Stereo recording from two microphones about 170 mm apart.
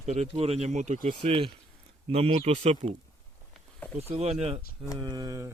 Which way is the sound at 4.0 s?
40° right (ahead or behind).